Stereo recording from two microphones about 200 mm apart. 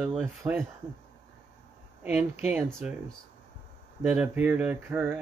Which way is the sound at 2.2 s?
35° left (ahead or behind).